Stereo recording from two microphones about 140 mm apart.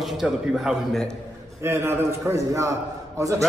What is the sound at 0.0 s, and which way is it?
A man's voice, 5° right (ahead or behind).